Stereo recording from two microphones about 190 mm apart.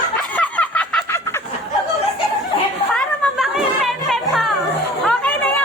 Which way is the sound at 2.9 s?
Centre (ahead or behind).